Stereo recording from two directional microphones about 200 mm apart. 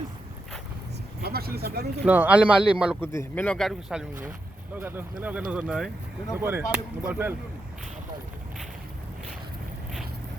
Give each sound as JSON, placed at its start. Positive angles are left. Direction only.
{"t": 1.2, "sound": "speech", "side_deg": -50}
{"t": 2.0, "sound": "speech", "side_deg": -10}
{"t": 3.0, "sound": "speech", "side_deg": 15}